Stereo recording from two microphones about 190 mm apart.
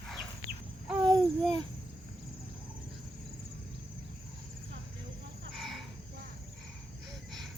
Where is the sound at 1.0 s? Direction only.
20° right (ahead or behind).